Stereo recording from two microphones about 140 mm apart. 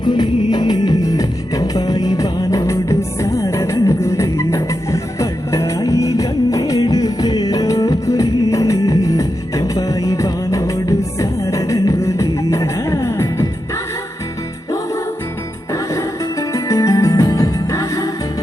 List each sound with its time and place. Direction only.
0.0 s music: 30° left (ahead or behind)
15.7 s music: 20° left (ahead or behind)